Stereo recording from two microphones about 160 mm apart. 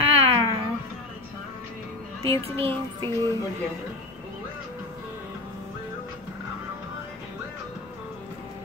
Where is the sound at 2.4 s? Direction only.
35° right (ahead or behind).